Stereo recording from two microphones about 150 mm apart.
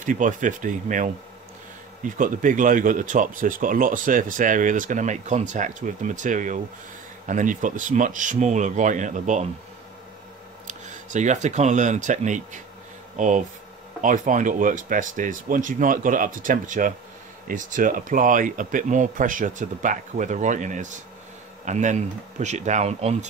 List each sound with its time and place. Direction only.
0.0 s speech: 60° right (ahead or behind)
10.7 s speech: 55° right (ahead or behind)